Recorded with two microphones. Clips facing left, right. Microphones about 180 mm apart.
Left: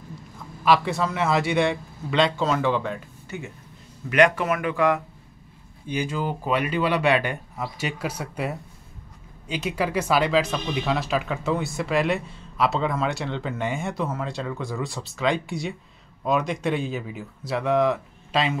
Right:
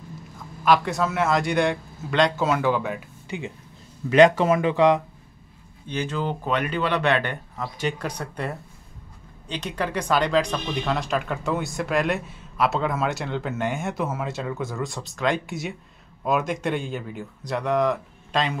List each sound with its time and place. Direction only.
0.7 s speech: centre (ahead or behind); by 3.5 s 15° right (ahead or behind)
4.1 s speech: 30° right (ahead or behind)
5.9 s speech: 10° left (ahead or behind)